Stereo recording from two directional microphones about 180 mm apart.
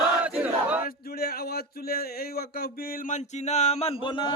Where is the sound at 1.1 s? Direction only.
55° left (ahead or behind).